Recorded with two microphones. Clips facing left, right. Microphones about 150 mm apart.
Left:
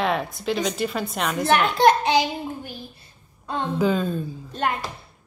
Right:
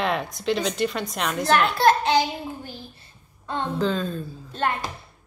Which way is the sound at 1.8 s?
20° left (ahead or behind).